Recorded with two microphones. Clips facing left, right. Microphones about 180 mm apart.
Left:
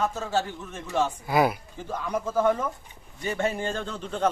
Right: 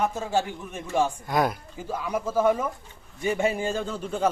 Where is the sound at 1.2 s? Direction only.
5° left (ahead or behind).